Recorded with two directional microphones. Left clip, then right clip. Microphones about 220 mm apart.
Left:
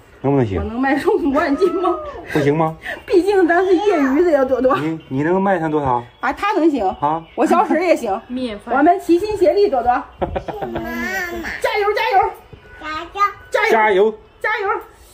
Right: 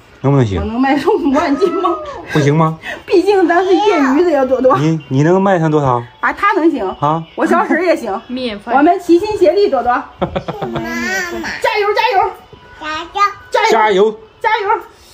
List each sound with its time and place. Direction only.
0.2 s speech: 5° right (ahead or behind)
4.2 s speech: 15° left (ahead or behind)
4.8 s speech: 10° right (ahead or behind)
6.2 s speech: 45° left (ahead or behind)
8.8 s a child's voice: centre (ahead or behind)